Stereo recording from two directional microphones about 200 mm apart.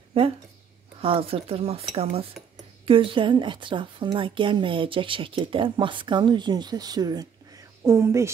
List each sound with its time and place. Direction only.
0.2 s a woman's voice: 30° right (ahead or behind)